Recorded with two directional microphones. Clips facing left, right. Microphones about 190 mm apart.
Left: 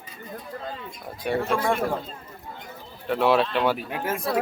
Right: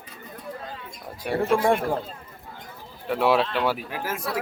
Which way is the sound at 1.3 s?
5° right (ahead or behind).